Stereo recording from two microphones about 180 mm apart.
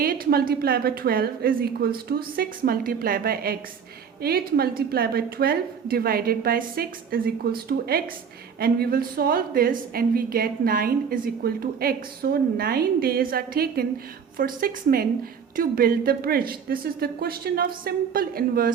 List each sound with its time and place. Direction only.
0.0 s a woman's voice: 55° right (ahead or behind)